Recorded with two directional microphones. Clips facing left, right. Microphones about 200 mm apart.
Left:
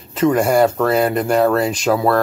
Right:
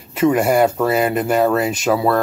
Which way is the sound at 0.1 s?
10° right (ahead or behind).